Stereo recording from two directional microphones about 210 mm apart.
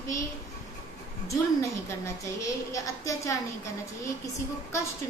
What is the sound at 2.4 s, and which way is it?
Speech, 15° left (ahead or behind).